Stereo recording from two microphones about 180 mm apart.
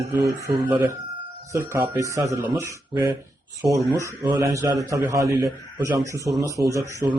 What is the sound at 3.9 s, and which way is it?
A man's voice, 20° right (ahead or behind).